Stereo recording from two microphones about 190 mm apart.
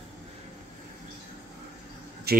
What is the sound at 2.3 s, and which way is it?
Speech, 55° right (ahead or behind).